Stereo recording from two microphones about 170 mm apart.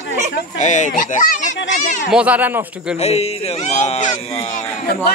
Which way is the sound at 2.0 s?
5° right (ahead or behind).